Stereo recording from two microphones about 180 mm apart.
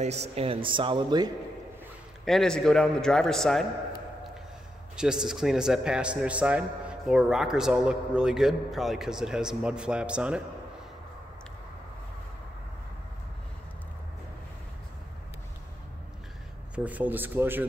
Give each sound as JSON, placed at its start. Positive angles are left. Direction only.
{"t": 0.0, "sound": "speech", "side_deg": -35}
{"t": 2.2, "sound": "a man's voice", "side_deg": 0}
{"t": 4.9, "sound": "a man's voice", "side_deg": -5}
{"t": 16.7, "sound": "speech", "side_deg": -10}